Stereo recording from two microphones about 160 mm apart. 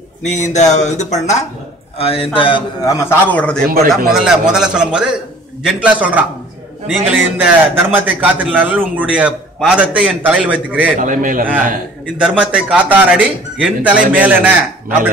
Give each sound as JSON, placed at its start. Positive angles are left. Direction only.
{"t": 0.2, "sound": "a man's voice", "side_deg": 50}
{"t": 3.3, "sound": "a man's voice", "side_deg": 10}
{"t": 3.6, "sound": "a man's voice", "side_deg": -65}
{"t": 4.1, "sound": "a man's voice", "side_deg": -5}
{"t": 11.0, "sound": "a man's voice", "side_deg": -55}
{"t": 12.2, "sound": "a man's voice", "side_deg": -5}